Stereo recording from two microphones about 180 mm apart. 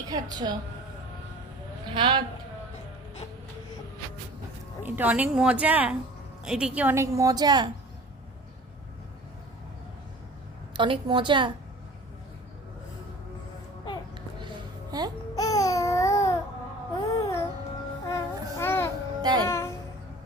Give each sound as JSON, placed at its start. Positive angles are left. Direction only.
{"t": 0.1, "sound": "a woman's voice", "side_deg": -20}
{"t": 1.9, "sound": "a woman's voice", "side_deg": -25}
{"t": 4.8, "sound": "a woman's voice", "side_deg": -10}
{"t": 10.8, "sound": "a woman's voice", "side_deg": -30}
{"t": 14.9, "sound": "a sound", "side_deg": -20}
{"t": 15.4, "sound": "a sound", "side_deg": 20}
{"t": 16.9, "sound": "babbling", "side_deg": 20}
{"t": 18.1, "sound": "a sound", "side_deg": 15}
{"t": 19.2, "sound": "music", "side_deg": -20}
{"t": 19.5, "sound": "music", "side_deg": 15}